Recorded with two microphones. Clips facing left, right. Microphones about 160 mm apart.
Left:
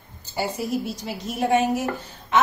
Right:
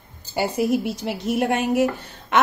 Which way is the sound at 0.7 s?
65° right (ahead or behind).